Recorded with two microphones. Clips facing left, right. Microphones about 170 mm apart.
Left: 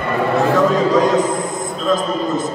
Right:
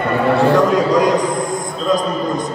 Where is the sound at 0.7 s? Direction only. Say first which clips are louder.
Even; 15° right (ahead or behind).